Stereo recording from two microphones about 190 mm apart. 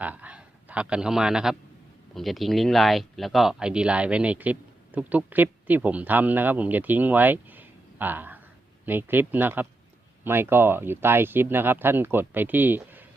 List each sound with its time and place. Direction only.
0.0 s a man's voice: 10° right (ahead or behind)